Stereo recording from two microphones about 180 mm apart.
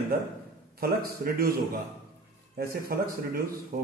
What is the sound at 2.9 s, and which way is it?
Speech, 60° right (ahead or behind).